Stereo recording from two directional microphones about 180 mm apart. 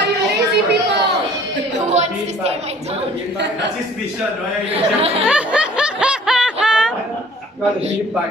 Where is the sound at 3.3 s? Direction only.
75° right (ahead or behind).